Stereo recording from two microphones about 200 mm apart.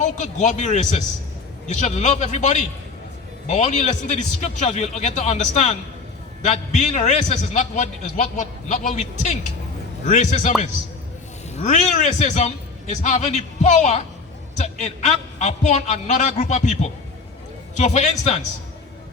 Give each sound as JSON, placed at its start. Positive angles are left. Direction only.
{"t": 0.0, "sound": "a man's voice", "side_deg": 35}
{"t": 11.5, "sound": "a man's voice", "side_deg": 35}